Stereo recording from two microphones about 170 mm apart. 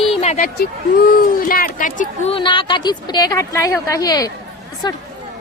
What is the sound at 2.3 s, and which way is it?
A woman's voice, 30° left (ahead or behind).